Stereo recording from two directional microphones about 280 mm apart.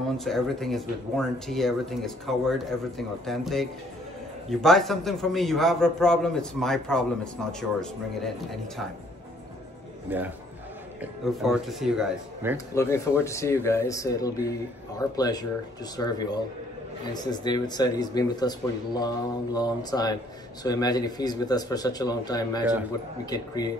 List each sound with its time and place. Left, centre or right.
0.2 s speech: centre
10.0 s a man's voice: centre
12.5 s speech: centre